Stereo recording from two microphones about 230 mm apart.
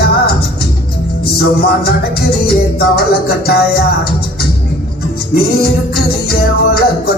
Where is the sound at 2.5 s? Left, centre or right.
Left.